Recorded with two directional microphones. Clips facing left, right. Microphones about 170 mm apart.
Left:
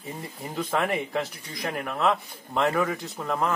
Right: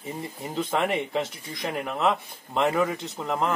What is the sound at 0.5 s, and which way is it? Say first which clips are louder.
A man's voice: right 1 dB; 20° right (ahead or behind).